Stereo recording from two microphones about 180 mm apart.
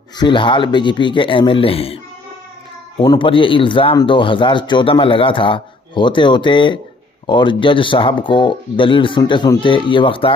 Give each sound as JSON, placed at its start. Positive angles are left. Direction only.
{"t": 0.2, "sound": "speech", "side_deg": 25}
{"t": 3.0, "sound": "speech", "side_deg": 25}